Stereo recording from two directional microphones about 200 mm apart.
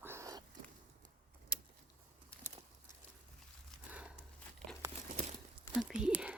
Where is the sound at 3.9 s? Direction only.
5° right (ahead or behind).